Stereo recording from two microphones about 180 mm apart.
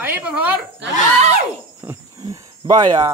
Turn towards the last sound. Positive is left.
turn(degrees=-25)  # may be behind; listen again after turning